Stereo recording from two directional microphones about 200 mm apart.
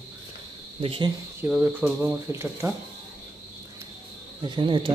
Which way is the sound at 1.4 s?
10° right (ahead or behind).